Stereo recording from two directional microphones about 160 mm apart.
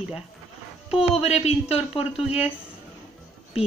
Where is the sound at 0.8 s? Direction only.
40° left (ahead or behind).